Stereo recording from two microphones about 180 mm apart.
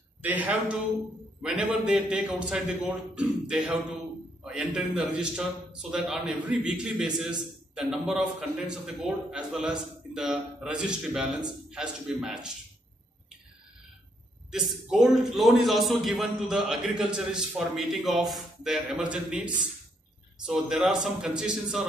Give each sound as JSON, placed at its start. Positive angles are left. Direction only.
{"t": 0.2, "sound": "a man's voice", "side_deg": -10}
{"t": 14.5, "sound": "a man's voice", "side_deg": 0}